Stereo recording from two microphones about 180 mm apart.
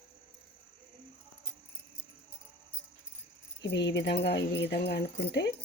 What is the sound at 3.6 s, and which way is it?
Speech, 75° left (ahead or behind).